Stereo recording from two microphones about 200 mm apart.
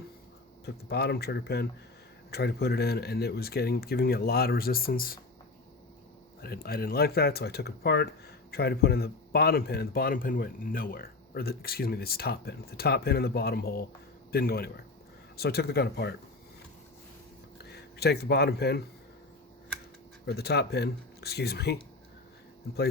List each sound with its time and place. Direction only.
0.6 s speech: 55° left (ahead or behind)
6.4 s speech: 50° left (ahead or behind)
17.7 s speech: 55° left (ahead or behind)
20.2 s speech: 55° left (ahead or behind)